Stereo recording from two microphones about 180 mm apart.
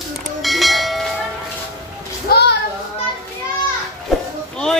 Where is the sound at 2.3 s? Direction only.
60° left (ahead or behind).